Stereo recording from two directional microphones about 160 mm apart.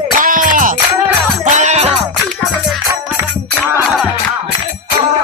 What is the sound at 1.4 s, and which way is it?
Music, 50° right (ahead or behind).